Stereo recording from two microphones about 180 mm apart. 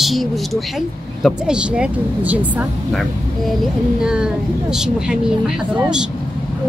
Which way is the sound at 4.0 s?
5° right (ahead or behind).